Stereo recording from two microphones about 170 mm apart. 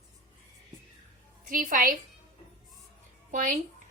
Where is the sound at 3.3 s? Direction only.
50° right (ahead or behind).